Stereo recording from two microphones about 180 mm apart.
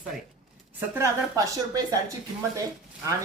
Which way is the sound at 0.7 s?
15° right (ahead or behind).